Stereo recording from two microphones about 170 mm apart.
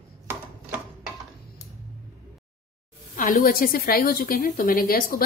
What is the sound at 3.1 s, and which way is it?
A woman's voice, 55° left (ahead or behind).